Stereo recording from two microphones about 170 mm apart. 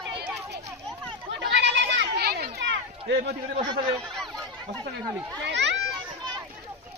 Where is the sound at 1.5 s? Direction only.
90° right.